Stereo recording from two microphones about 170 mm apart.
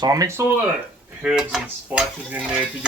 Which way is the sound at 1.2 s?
5° right (ahead or behind).